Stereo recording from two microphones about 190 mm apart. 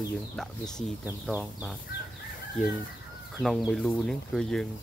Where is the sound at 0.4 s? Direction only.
5° left (ahead or behind).